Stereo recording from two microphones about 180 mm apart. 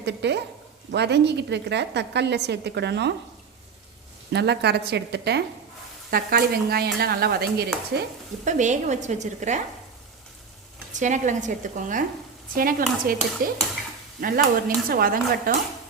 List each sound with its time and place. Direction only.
0.0 s a woman's voice: 70° right (ahead or behind)
4.3 s a woman's voice: 70° right (ahead or behind)
8.4 s a woman's voice: 40° right (ahead or behind)
10.9 s speech: 40° right (ahead or behind)